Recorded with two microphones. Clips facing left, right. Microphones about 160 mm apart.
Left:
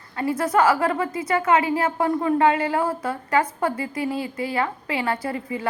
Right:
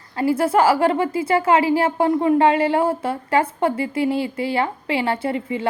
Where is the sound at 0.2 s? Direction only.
30° right (ahead or behind).